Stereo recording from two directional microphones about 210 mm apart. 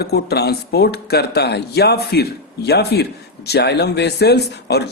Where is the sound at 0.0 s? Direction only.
50° left (ahead or behind).